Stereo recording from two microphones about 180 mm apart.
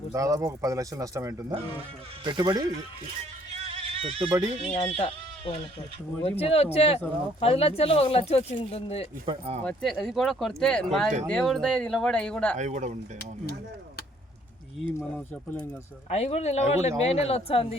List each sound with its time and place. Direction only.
0.1 s a man's voice: 20° right (ahead or behind)
3.5 s a sound: 35° right (ahead or behind)
4.7 s speech: 35° left (ahead or behind)
9.2 s a man's voice: 30° right (ahead or behind)
9.6 s speech: 5° left (ahead or behind)
12.5 s speech: 40° right (ahead or behind)
15.1 s speech: 10° left (ahead or behind)
16.0 s speech: 35° left (ahead or behind)